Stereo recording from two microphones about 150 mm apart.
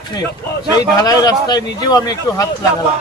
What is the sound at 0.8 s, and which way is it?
A man's voice, 25° left (ahead or behind).